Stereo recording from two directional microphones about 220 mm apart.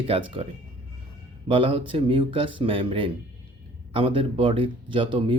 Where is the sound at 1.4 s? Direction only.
25° right (ahead or behind).